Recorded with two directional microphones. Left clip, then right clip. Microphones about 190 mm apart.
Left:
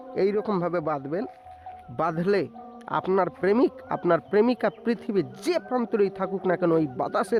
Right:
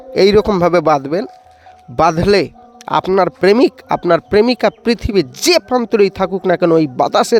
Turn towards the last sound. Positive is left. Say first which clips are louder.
# right 13 dB
turn(degrees=-40)  # may be behind; listen again after turning